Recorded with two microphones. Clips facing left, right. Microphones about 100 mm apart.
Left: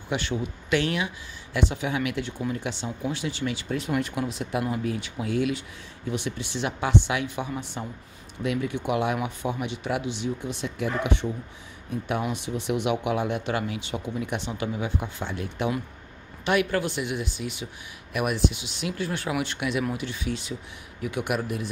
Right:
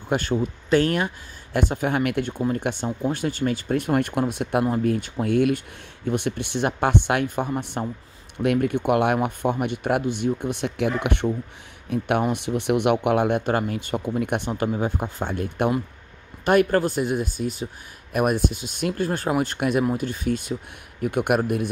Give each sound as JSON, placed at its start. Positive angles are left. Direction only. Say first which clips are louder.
{"t": 0.1, "sound": "speech", "louder": "right 5 dB", "side_deg": -45}
{"t": 14.5, "sound": "speech", "louder": "right 5 dB", "side_deg": -40}